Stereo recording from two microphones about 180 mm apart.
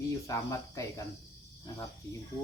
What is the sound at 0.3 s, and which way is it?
Speech, 15° left (ahead or behind).